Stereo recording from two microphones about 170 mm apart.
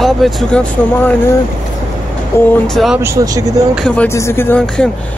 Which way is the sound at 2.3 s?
15° left (ahead or behind).